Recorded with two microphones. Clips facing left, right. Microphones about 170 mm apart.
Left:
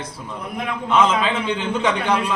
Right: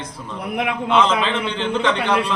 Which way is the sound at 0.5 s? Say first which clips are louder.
Right 4 dB; 75° right (ahead or behind).